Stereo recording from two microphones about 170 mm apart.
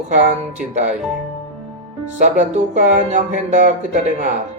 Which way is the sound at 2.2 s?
45° right (ahead or behind).